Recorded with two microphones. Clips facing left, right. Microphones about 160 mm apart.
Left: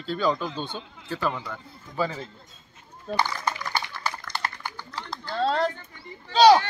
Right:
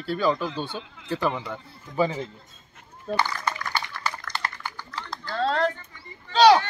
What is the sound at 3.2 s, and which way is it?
Dog, 10° left (ahead or behind).